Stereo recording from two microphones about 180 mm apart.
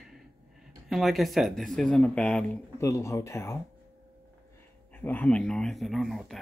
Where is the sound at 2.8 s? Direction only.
15° left (ahead or behind).